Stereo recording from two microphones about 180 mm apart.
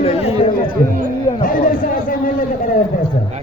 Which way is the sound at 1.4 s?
50° left (ahead or behind).